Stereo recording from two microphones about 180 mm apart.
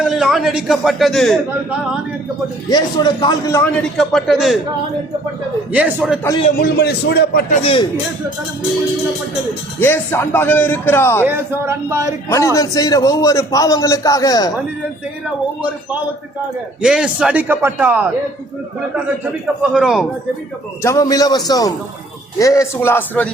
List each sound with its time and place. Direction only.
0.0 s a man's voice: 5° right (ahead or behind)
2.6 s a man's voice: 25° left (ahead or behind)
3.6 s a man's voice: centre (ahead or behind)
5.7 s speech: 10° right (ahead or behind)
6.6 s a man's voice: 65° left (ahead or behind)
7.5 s speech: 35° left (ahead or behind)
9.8 s a man's voice: 10° left (ahead or behind)
11.3 s speech: 10° right (ahead or behind)
12.3 s a man's voice: 15° left (ahead or behind)
16.8 s speech: 5° right (ahead or behind)
19.7 s a man's voice: 5° right (ahead or behind)
20.8 s a man's voice: 20° left (ahead or behind)